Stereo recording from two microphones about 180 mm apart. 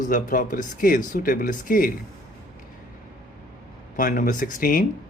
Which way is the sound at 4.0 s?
50° left (ahead or behind).